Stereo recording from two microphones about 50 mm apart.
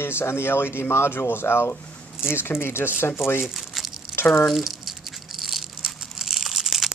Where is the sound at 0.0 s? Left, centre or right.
Left.